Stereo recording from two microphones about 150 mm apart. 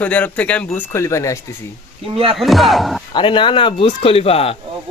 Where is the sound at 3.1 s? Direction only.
35° left (ahead or behind).